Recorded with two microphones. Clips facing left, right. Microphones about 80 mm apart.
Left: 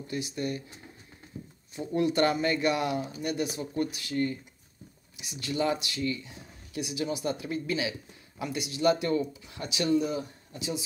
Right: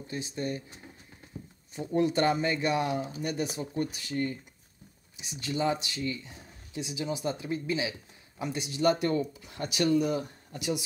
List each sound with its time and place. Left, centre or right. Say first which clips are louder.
0.1 s speech: left 1 dB; right
2.1 s speech: left 1 dB; right
8.4 s speech: even; right